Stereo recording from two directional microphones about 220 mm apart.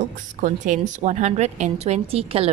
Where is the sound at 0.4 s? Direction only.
35° right (ahead or behind).